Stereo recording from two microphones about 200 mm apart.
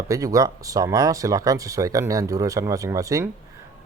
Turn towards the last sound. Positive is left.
turn(degrees=-15)  # may be behind; listen again after turning